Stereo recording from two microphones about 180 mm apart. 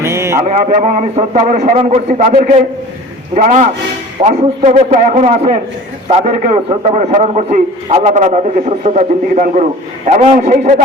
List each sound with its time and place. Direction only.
0.0 s mantra: 15° right (ahead or behind)
0.4 s a man's voice: 45° right (ahead or behind)
6.3 s a man's voice: 45° right (ahead or behind)